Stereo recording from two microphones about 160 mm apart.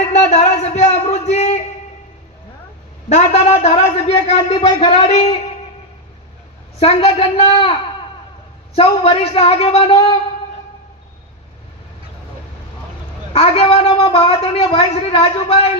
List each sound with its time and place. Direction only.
0.1 s a sound: 45° left (ahead or behind)
3.1 s a woman's voice: 40° left (ahead or behind)
6.7 s a woman's voice: 40° left (ahead or behind)
8.7 s a woman's voice: 40° left (ahead or behind)
13.3 s a woman's voice: 35° left (ahead or behind)